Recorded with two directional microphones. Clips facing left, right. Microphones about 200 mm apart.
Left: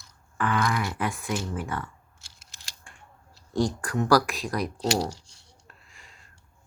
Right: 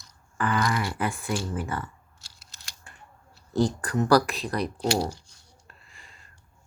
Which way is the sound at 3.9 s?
Centre (ahead or behind).